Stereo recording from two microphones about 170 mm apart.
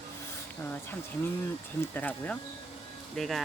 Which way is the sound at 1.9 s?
10° left (ahead or behind).